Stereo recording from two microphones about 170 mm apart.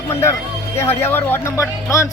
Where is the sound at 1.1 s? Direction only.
15° left (ahead or behind).